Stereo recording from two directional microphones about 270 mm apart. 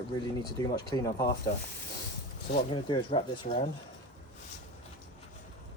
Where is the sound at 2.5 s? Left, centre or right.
Centre.